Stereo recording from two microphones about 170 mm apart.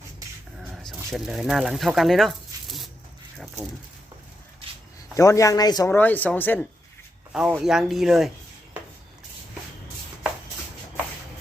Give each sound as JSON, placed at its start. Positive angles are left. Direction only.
{"t": 0.6, "sound": "bird", "side_deg": 0}
{"t": 3.3, "sound": "a sound", "side_deg": 0}
{"t": 5.1, "sound": "speech", "side_deg": 20}
{"t": 7.5, "sound": "speech", "side_deg": 0}